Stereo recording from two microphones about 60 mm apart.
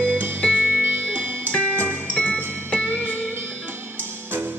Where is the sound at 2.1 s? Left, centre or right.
Left.